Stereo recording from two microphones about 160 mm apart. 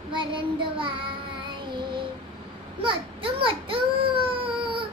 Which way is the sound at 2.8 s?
35° right (ahead or behind).